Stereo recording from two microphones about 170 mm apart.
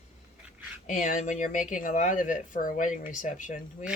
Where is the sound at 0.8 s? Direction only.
45° left (ahead or behind).